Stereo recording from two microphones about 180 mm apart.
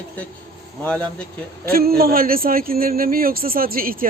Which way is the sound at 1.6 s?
55° right (ahead or behind).